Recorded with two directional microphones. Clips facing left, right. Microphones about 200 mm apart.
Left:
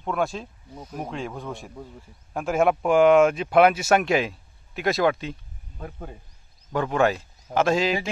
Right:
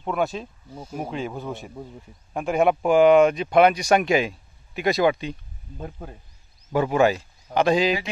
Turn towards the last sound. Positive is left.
turn(degrees=0)  # may be behind; listen again after turning